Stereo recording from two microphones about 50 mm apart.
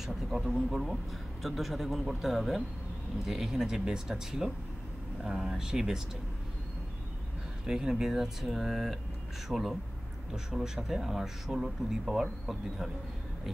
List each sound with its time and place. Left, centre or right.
0.0 s speech: centre
7.6 s speech: centre